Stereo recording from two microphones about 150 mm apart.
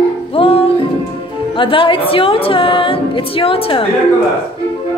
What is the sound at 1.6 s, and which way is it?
Speech, 35° left (ahead or behind).